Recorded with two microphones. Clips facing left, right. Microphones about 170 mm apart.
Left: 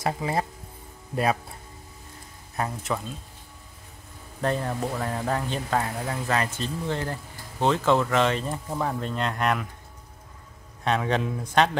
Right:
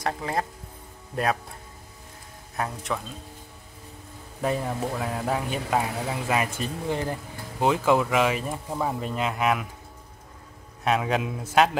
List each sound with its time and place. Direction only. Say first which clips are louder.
0.0 s a man's voice: left 1 dB; 5° left (ahead or behind)
2.5 s a man's voice: left 1 dB; centre (ahead or behind)
4.4 s speech: even; 5° right (ahead or behind)
10.8 s a man's voice: even; 5° right (ahead or behind)